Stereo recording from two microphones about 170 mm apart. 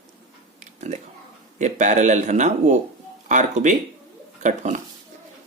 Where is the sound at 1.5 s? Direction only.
45° right (ahead or behind).